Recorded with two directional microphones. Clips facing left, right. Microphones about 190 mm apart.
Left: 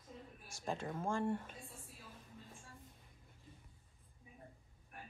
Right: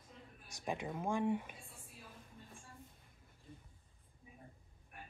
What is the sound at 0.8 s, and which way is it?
Speech, 15° right (ahead or behind).